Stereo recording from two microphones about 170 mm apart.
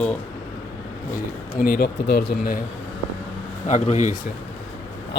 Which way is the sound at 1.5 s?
60° left (ahead or behind).